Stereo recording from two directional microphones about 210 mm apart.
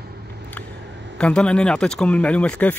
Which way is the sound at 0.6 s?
10° left (ahead or behind).